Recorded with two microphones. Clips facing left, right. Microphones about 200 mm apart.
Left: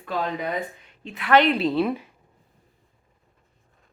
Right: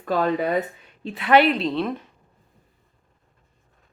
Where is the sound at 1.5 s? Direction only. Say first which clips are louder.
Left 2 dB; 5° left (ahead or behind).